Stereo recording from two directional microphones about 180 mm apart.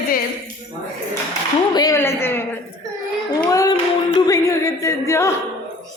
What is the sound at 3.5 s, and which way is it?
Music, 20° left (ahead or behind).